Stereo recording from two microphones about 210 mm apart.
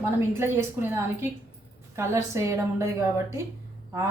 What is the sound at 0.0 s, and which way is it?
A woman's voice, 10° right (ahead or behind).